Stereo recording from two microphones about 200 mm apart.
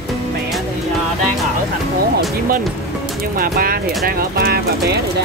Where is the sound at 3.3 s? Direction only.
50° right (ahead or behind).